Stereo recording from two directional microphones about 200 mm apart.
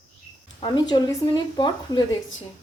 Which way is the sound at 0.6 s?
20° left (ahead or behind).